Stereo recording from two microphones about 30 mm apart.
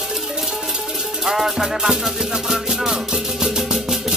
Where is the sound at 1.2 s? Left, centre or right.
Centre.